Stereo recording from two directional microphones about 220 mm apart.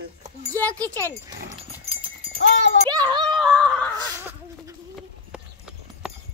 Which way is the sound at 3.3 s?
Centre (ahead or behind).